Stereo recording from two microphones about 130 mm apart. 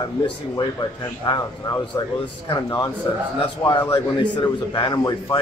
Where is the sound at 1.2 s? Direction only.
30° left (ahead or behind).